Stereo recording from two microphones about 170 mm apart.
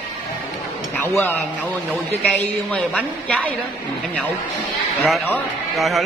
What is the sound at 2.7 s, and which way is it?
Speech, 5° left (ahead or behind).